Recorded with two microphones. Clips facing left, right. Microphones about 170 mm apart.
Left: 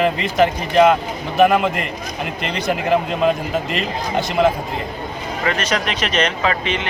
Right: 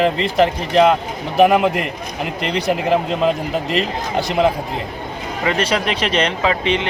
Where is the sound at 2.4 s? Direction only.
35° right (ahead or behind).